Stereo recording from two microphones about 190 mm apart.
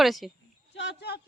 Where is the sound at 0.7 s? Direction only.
65° left (ahead or behind).